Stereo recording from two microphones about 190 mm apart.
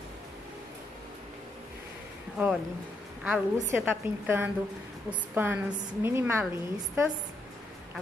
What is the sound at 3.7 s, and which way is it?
A woman's voice, 10° right (ahead or behind).